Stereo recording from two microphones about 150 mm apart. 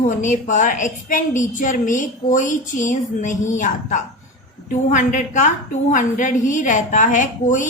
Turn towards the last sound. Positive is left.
turn(degrees=60)  # may be behind; listen again after turning